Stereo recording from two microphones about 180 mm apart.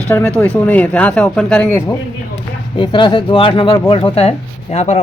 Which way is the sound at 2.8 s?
25° left (ahead or behind).